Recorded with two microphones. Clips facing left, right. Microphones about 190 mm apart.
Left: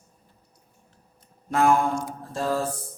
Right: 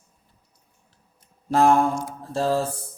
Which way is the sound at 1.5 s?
30° right (ahead or behind).